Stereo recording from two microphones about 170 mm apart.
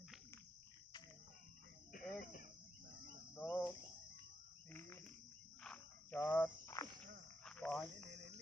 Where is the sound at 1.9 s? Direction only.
55° left (ahead or behind).